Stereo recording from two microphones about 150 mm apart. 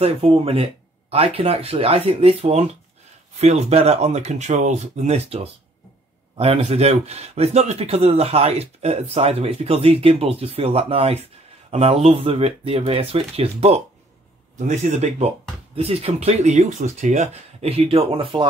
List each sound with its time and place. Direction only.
0.0 s speech: 40° right (ahead or behind)